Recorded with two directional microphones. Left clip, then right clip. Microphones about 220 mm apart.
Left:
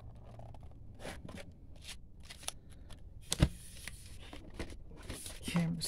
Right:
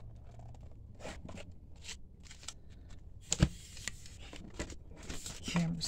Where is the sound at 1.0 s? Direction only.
35° left (ahead or behind).